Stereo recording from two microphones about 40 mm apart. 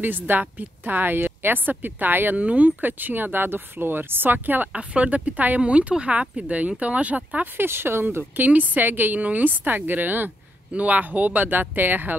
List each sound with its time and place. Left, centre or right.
0.0 s a woman's voice: right
2.3 s speech: right
4.7 s speech: right
7.5 s speech: right
8.2 s speech: right
10.7 s speech: right